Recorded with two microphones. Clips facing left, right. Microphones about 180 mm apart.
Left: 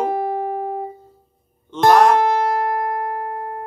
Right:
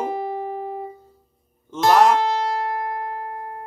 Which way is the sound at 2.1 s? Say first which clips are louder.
Left 4 dB; 55° left (ahead or behind).